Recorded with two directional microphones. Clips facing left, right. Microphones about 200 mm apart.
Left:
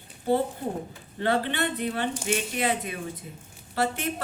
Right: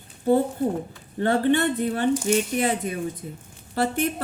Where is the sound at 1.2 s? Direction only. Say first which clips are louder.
Right 6 dB; 45° right (ahead or behind).